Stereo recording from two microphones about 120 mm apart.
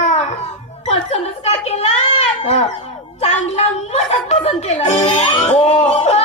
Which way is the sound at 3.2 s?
65° left (ahead or behind).